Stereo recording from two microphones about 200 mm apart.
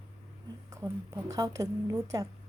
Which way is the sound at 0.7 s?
15° right (ahead or behind).